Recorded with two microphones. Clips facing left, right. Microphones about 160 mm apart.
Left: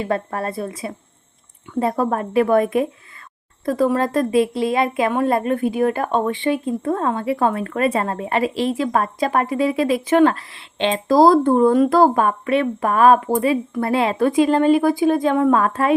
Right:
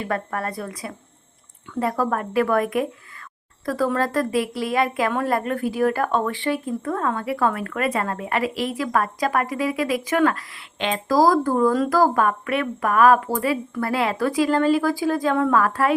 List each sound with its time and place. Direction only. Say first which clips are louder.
0.0 s a woman's voice: left 4 dB; 25° left (ahead or behind)